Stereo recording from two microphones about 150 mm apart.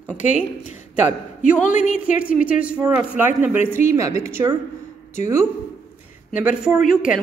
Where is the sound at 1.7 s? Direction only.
60° left (ahead or behind).